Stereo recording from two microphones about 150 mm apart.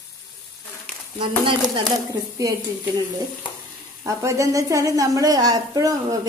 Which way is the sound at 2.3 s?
25° right (ahead or behind).